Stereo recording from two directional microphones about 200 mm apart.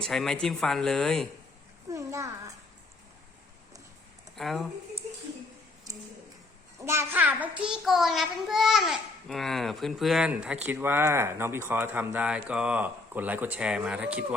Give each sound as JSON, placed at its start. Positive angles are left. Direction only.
{"t": 0.0, "sound": "a child's voice", "side_deg": 0}
{"t": 1.9, "sound": "a child's voice", "side_deg": -15}
{"t": 4.4, "sound": "a child's voice", "side_deg": 0}
{"t": 6.7, "sound": "a child's voice", "side_deg": -15}